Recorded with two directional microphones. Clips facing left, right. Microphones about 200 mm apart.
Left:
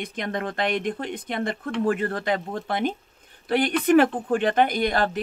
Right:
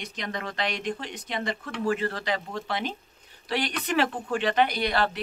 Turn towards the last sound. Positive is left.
turn(degrees=45)  # may be behind; listen again after turning